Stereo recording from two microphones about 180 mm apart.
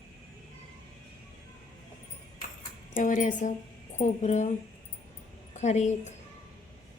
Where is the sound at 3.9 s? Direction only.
40° left (ahead or behind).